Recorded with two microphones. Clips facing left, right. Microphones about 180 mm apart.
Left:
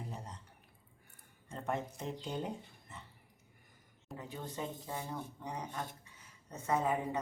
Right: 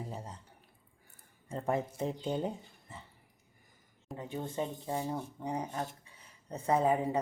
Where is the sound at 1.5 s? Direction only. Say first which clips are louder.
Right 6 dB; 30° right (ahead or behind).